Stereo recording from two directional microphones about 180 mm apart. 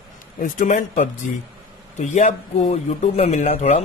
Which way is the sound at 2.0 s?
40° left (ahead or behind).